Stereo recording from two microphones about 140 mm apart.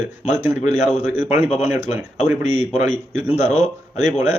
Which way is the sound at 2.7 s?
15° right (ahead or behind).